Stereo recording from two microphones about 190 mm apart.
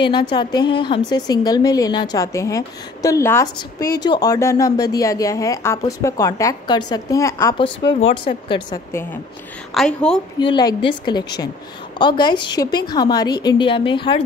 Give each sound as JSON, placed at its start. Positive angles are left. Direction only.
{"t": 0.0, "sound": "a woman's voice", "side_deg": 25}
{"t": 7.5, "sound": "a woman's voice", "side_deg": 25}
{"t": 9.8, "sound": "a woman's voice", "side_deg": 5}
{"t": 10.4, "sound": "a woman's voice", "side_deg": 20}